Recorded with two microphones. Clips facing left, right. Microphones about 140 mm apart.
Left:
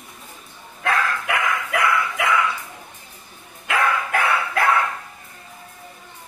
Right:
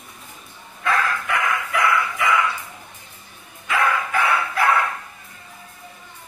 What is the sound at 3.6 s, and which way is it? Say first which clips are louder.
Dog: even; 60° left (ahead or behind).